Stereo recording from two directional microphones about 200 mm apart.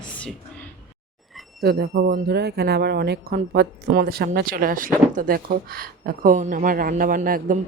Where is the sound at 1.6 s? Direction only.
50° right (ahead or behind).